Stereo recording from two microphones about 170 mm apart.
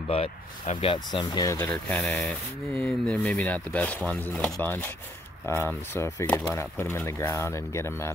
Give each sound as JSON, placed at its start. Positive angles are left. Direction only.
{"t": 0.1, "sound": "speech", "side_deg": 35}
{"t": 1.6, "sound": "speech", "side_deg": 5}